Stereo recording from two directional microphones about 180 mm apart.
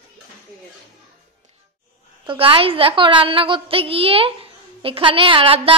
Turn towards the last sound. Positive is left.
turn(degrees=-30)  # may be behind; listen again after turning